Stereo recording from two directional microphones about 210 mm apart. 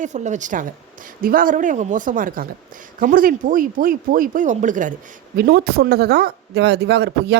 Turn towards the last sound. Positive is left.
turn(degrees=-50)  # may be behind; listen again after turning